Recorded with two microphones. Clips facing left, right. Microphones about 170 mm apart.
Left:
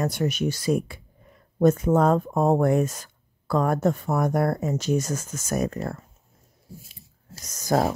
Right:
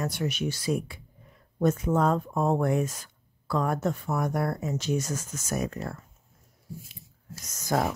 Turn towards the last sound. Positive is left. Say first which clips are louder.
# left 4 dB
turn(degrees=35)  # may be behind; listen again after turning